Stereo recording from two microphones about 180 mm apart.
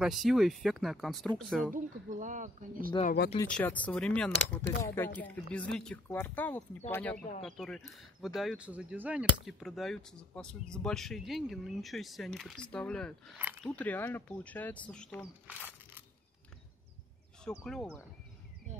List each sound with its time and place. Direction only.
0.0 s speech: centre (ahead or behind)
1.7 s speech: 45° right (ahead or behind)
3.4 s speech: 5° left (ahead or behind)
13.4 s speech: 10° right (ahead or behind)
13.7 s speech: 10° left (ahead or behind)
17.5 s speech: 5° left (ahead or behind)